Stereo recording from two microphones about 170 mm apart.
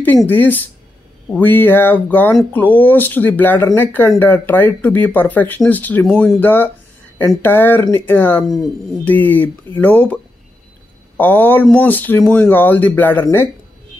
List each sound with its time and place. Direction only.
0.3 s speech: 10° left (ahead or behind)